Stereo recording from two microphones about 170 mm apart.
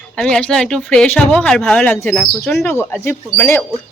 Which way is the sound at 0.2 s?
5° left (ahead or behind).